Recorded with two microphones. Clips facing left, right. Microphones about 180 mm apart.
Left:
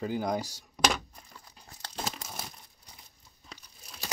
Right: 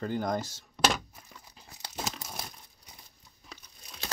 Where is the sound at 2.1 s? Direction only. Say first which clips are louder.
Even; 5° left (ahead or behind).